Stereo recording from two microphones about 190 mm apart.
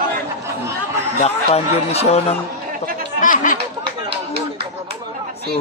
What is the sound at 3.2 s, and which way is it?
Chatter, 40° left (ahead or behind).